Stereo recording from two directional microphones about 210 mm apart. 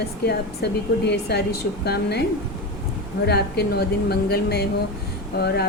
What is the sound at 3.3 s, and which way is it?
Speech, 50° left (ahead or behind).